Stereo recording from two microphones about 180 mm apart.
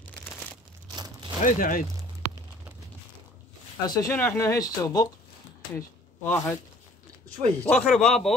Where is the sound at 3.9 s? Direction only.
20° left (ahead or behind).